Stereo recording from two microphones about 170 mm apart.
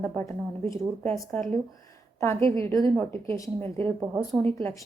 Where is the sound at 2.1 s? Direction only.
15° left (ahead or behind).